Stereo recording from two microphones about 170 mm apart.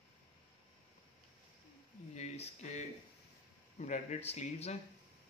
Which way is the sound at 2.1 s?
40° left (ahead or behind).